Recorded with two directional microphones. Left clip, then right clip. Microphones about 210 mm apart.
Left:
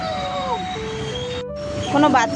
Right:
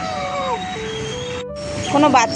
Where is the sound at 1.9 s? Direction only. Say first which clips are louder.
Right 2 dB; centre (ahead or behind).